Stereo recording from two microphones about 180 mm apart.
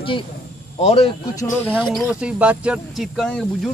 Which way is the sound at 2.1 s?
5° right (ahead or behind).